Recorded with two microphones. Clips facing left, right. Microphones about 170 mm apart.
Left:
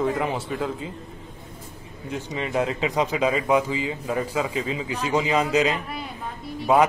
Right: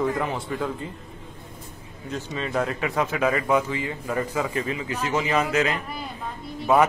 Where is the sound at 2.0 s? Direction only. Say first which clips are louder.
Left 1 dB; 15° left (ahead or behind).